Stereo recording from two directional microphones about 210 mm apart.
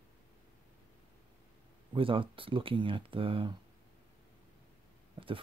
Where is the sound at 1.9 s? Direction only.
25° right (ahead or behind).